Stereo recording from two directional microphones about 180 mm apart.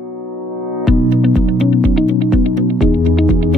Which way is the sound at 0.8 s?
Centre (ahead or behind).